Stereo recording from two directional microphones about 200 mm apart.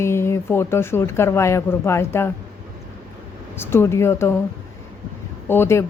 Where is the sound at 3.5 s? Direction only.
10° left (ahead or behind).